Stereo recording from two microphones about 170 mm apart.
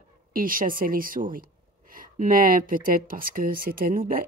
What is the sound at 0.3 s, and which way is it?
Speech, 55° right (ahead or behind).